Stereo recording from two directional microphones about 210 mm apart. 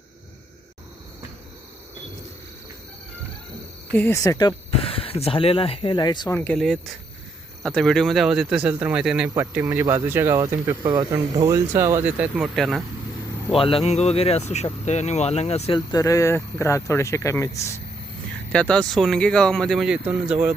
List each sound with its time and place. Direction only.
3.9 s speech: 10° left (ahead or behind)
13.5 s speech: 25° left (ahead or behind); by 20.5 s 5° right (ahead or behind)